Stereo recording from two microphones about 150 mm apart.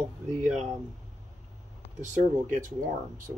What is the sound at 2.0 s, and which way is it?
Speech, 60° right (ahead or behind).